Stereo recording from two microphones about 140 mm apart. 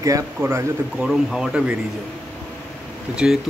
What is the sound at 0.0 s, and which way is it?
Speech, 20° right (ahead or behind).